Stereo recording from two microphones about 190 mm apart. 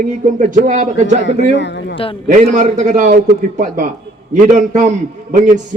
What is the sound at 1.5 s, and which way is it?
Speech, 65° left (ahead or behind).